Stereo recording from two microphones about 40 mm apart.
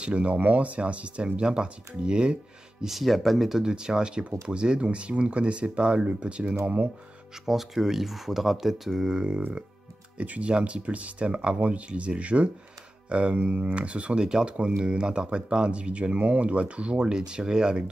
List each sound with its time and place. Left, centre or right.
0.0 s speech: right
0.4 s speech: right
2.8 s speech: centre
3.6 s speech: centre; by 6.9 s right
7.4 s speech: centre
9.1 s speech: right
10.1 s speech: right; by 17.8 s centre